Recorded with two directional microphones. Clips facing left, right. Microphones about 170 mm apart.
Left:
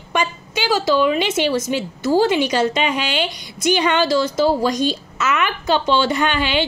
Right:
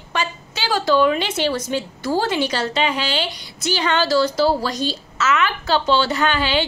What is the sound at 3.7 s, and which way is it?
A woman's voice, 15° left (ahead or behind).